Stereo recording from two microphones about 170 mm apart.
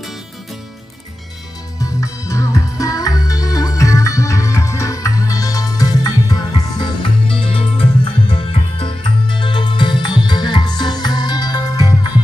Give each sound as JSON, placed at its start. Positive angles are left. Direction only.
{"t": 1.8, "sound": "music", "side_deg": 20}